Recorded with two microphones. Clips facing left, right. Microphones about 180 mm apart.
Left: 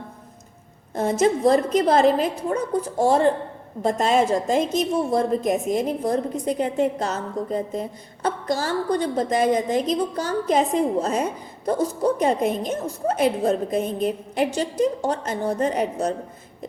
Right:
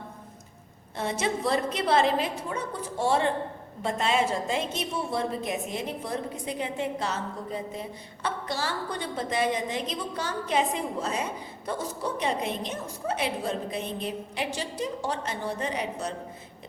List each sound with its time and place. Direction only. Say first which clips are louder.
0.9 s a woman's voice: left 9 dB; 45° left (ahead or behind)